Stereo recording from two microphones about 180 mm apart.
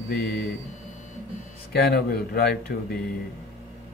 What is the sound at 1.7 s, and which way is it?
Speech, 65° left (ahead or behind).